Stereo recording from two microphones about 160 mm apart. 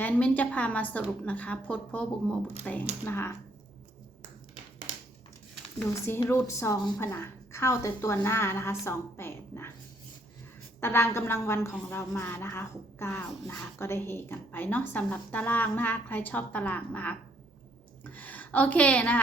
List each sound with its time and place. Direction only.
0.0 s a woman's voice: 10° left (ahead or behind)
5.9 s a woman's voice: 15° left (ahead or behind)
10.8 s a woman's voice: 15° left (ahead or behind)